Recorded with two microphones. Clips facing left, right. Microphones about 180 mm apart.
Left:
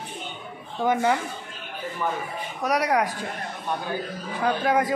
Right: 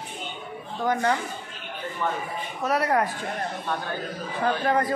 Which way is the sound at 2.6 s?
15° left (ahead or behind).